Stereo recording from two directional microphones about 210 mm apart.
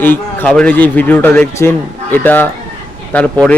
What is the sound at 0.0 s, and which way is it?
Speech, 10° left (ahead or behind).